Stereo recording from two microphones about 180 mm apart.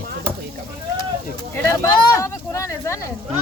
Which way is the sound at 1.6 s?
15° left (ahead or behind).